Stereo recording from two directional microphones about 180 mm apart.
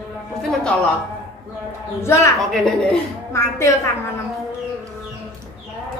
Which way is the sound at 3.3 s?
15° left (ahead or behind).